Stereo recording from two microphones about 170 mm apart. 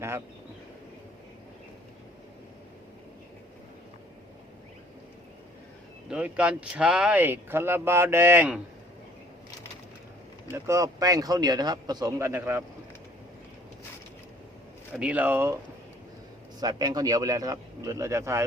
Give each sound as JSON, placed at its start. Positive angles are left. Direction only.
{"t": 6.1, "sound": "speech", "side_deg": -5}
{"t": 10.5, "sound": "speech", "side_deg": -20}
{"t": 14.9, "sound": "speech", "side_deg": -10}
{"t": 16.6, "sound": "speech", "side_deg": -25}